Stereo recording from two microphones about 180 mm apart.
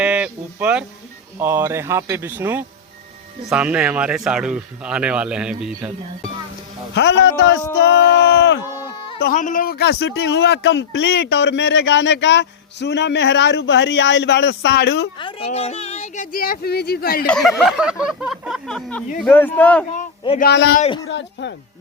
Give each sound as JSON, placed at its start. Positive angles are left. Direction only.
{"t": 0.0, "sound": "speech", "side_deg": -5}
{"t": 6.9, "sound": "a man's voice", "side_deg": 80}
{"t": 7.8, "sound": "speech", "side_deg": 75}
{"t": 9.2, "sound": "speech", "side_deg": 45}
{"t": 15.2, "sound": "speech", "side_deg": 30}
{"t": 17.2, "sound": "speech", "side_deg": 0}
{"t": 20.4, "sound": "a man's voice", "side_deg": 65}
{"t": 21.1, "sound": "a man's voice", "side_deg": 80}